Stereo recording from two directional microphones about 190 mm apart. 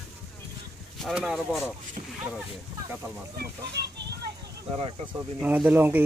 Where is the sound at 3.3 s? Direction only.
60° right (ahead or behind).